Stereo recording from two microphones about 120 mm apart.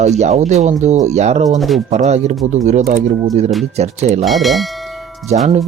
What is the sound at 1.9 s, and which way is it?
Speech, 70° right (ahead or behind).